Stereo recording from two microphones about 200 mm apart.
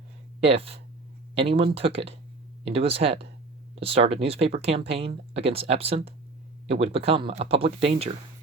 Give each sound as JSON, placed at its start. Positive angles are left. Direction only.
{"t": 0.3, "sound": "speech", "side_deg": -30}